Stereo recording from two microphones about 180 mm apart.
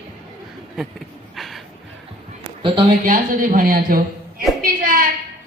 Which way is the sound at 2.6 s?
25° right (ahead or behind).